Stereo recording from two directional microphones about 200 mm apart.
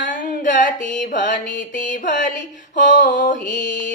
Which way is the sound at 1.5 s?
40° left (ahead or behind).